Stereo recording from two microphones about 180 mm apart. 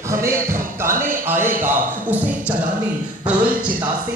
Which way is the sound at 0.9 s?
50° right (ahead or behind).